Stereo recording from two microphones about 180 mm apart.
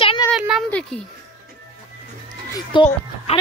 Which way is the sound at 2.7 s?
25° left (ahead or behind).